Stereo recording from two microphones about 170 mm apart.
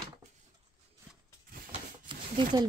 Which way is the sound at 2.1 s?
30° right (ahead or behind).